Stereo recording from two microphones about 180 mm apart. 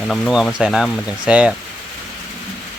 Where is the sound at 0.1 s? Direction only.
Centre (ahead or behind).